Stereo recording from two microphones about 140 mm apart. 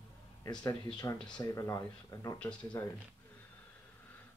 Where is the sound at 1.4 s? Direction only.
25° left (ahead or behind).